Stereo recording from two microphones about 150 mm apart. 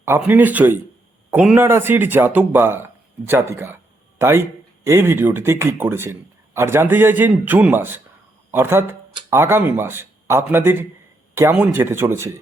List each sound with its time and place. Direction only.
0.0 s speech: 15° right (ahead or behind)